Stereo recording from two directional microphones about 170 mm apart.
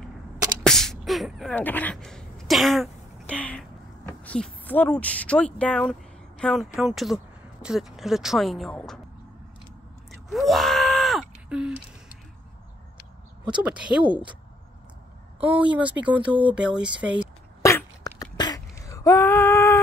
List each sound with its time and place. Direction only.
0.7 s beatboxing: centre (ahead or behind)
1.6 s throat clearing: 10° left (ahead or behind)
4.2 s speech: 10° left (ahead or behind)
10.3 s groan: centre (ahead or behind)
13.5 s speech: 5° right (ahead or behind)
15.8 s speech: 10° right (ahead or behind)
17.6 s beatboxing: 15° left (ahead or behind)